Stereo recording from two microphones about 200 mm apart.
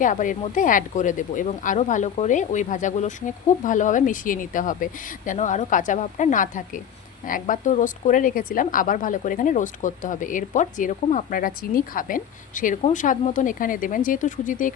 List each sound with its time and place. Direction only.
0.0 s a woman's voice: 40° left (ahead or behind)